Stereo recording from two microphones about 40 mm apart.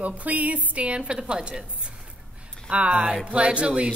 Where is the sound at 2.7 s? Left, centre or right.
Right.